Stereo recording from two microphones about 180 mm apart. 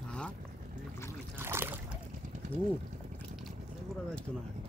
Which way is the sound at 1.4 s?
15° right (ahead or behind).